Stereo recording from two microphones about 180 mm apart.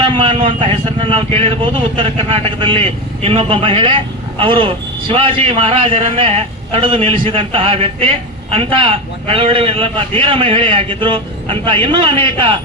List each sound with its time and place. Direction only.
0.0 s a man's voice: 30° right (ahead or behind)